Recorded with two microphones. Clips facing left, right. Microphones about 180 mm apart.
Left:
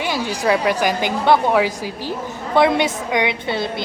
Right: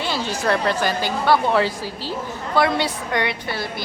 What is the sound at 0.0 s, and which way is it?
A woman's voice, 15° left (ahead or behind).